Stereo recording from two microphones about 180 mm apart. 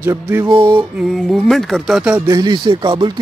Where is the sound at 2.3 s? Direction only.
25° right (ahead or behind).